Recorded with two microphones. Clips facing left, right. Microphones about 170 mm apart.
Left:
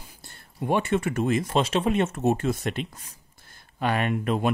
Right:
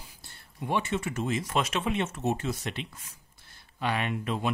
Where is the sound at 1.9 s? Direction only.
50° left (ahead or behind).